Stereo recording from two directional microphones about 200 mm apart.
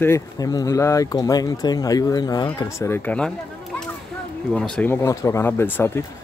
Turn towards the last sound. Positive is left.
turn(degrees=10)  # may be behind; listen again after turning